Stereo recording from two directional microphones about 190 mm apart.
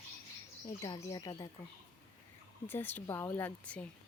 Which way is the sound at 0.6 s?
20° left (ahead or behind).